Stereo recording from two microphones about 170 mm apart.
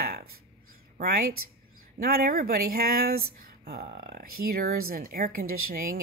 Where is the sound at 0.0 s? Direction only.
60° right (ahead or behind).